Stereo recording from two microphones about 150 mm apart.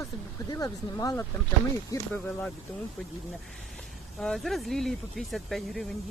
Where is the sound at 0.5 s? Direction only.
25° left (ahead or behind).